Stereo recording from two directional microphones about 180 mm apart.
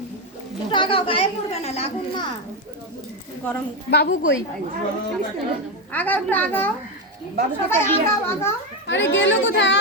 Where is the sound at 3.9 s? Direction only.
70° left (ahead or behind).